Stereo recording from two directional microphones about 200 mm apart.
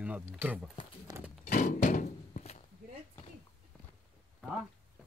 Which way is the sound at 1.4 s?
40° left (ahead or behind).